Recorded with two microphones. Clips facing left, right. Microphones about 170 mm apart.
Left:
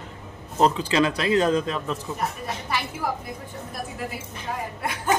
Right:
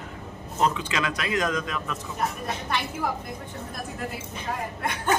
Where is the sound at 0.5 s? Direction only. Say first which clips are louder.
Left 5 dB; 35° left (ahead or behind).